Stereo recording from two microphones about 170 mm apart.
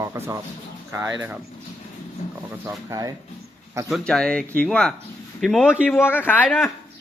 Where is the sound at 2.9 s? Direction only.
20° right (ahead or behind).